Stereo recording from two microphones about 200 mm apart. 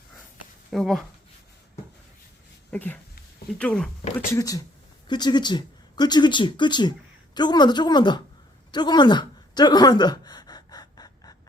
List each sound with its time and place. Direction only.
0.7 s speech: centre (ahead or behind)
2.6 s speech: 10° left (ahead or behind)
4.3 s speech: 15° left (ahead or behind)
8.7 s a sound: 20° left (ahead or behind)